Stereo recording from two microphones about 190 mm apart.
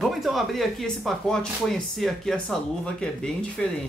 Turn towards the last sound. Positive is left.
turn(degrees=5)  # may be behind; listen again after turning